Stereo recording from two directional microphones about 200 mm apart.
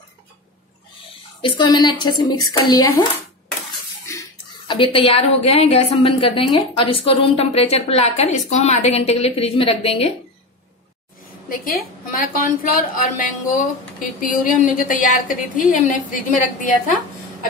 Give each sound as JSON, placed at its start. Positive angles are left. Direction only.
{"t": 1.4, "sound": "a woman's voice", "side_deg": 25}
{"t": 4.1, "sound": "a woman's voice", "side_deg": 20}
{"t": 11.4, "sound": "a woman's voice", "side_deg": 45}